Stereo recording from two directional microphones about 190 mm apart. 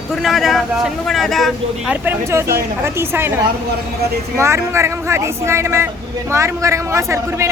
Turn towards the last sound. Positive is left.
turn(degrees=-15)  # may be behind; listen again after turning